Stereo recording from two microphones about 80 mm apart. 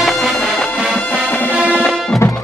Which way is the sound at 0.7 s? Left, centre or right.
Centre.